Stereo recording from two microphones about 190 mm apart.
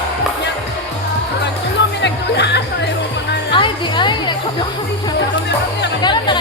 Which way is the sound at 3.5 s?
25° left (ahead or behind).